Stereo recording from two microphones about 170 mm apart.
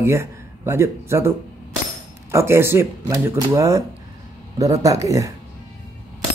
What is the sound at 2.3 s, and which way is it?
Speech, 15° right (ahead or behind).